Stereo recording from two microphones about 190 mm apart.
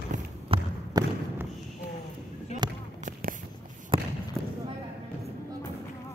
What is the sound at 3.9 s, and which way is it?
Basketball bounce, 25° right (ahead or behind).